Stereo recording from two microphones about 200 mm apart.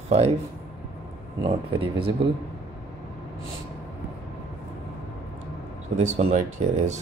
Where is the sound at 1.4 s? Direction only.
25° right (ahead or behind).